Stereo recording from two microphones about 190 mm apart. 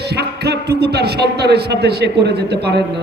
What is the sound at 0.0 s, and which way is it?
A man's voice, 60° right (ahead or behind).